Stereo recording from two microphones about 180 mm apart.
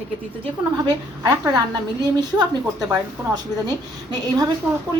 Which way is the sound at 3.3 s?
25° right (ahead or behind).